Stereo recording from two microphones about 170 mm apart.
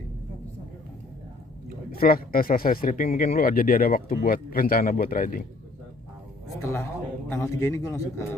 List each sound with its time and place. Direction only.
1.9 s a man's voice: 60° left (ahead or behind)
3.3 s a man's voice: 60° left (ahead or behind)
6.6 s a man's voice: 15° left (ahead or behind)